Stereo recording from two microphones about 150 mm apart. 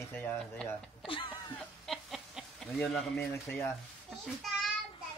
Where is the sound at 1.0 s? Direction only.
35° left (ahead or behind).